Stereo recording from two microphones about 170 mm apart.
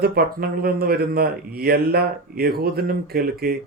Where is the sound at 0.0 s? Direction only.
65° right (ahead or behind).